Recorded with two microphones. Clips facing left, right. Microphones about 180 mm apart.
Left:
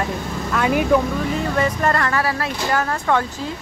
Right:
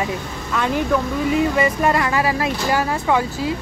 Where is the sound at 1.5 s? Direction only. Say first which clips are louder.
Right 2 dB; 10° right (ahead or behind).